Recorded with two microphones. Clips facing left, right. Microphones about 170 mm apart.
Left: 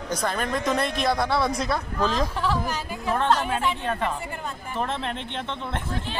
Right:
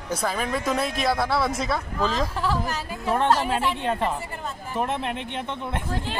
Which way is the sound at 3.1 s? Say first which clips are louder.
Right 1 dB; 10° right (ahead or behind).